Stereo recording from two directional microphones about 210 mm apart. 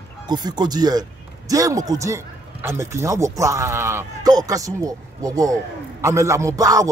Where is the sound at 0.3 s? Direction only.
20° right (ahead or behind).